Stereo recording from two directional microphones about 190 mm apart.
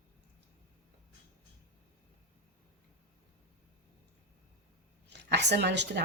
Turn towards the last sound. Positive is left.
turn(degrees=-65)  # may be behind; listen again after turning